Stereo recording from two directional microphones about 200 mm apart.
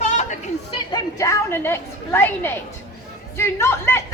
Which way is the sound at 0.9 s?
15° left (ahead or behind).